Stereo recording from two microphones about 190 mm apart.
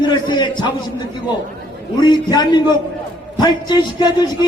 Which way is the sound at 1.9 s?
20° left (ahead or behind).